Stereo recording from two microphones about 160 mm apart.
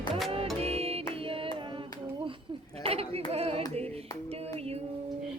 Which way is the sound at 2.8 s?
40° right (ahead or behind).